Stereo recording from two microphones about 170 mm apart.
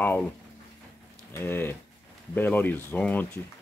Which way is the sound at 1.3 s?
15° left (ahead or behind).